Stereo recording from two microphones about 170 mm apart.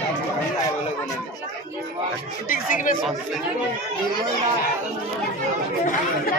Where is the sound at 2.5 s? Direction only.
55° left (ahead or behind).